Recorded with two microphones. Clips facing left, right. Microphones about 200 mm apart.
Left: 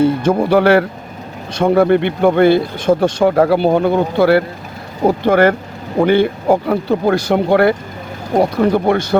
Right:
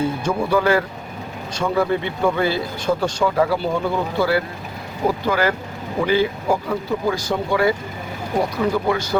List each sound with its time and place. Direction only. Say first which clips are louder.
0.0 s speech: left 8 dB; 70° left (ahead or behind)
1.5 s speech: left 9 dB; 60° left (ahead or behind)